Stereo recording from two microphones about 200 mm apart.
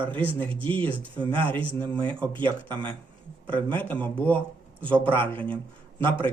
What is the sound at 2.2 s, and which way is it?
Speech, 10° left (ahead or behind).